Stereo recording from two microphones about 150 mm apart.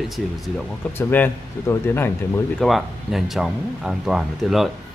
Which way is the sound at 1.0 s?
15° left (ahead or behind).